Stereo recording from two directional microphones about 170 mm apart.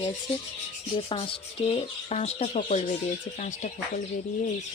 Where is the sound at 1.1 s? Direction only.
35° left (ahead or behind).